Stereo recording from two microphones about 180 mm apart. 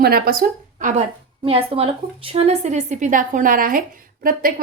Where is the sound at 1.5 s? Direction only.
30° right (ahead or behind).